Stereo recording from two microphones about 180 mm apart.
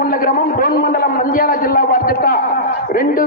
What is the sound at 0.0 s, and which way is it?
A man's voice, 55° left (ahead or behind).